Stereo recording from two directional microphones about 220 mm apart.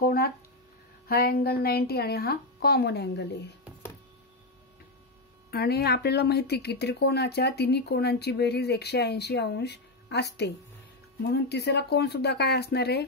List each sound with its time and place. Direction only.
0.0 s a sound: 45° left (ahead or behind)
1.0 s speech: 45° left (ahead or behind)
5.5 s speech: 45° left (ahead or behind)